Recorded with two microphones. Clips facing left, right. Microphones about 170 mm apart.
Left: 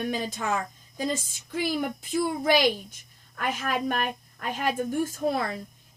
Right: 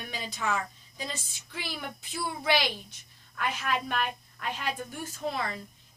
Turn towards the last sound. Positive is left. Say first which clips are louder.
# left 6 dB
turn(degrees=45)  # may be behind; listen again after turning